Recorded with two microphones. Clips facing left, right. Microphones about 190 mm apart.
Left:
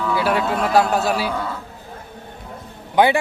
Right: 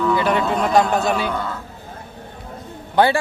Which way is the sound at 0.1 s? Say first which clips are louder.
Right 1 dB; 5° left (ahead or behind).